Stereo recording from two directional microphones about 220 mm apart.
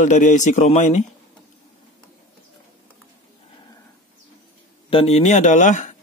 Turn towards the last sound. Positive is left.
turn(degrees=35)  # may be behind; listen again after turning